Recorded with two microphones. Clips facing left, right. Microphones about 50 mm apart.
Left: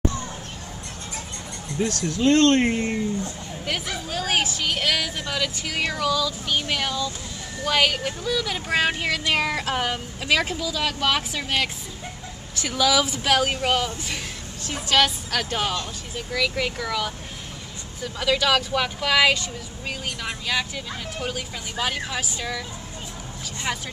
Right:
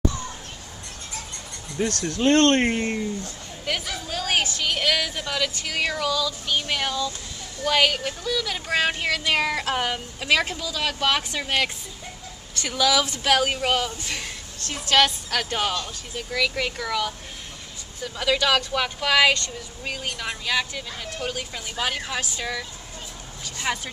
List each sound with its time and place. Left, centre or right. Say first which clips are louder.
2.1 s speech: left 1 dB; right
3.6 s speech: even; centre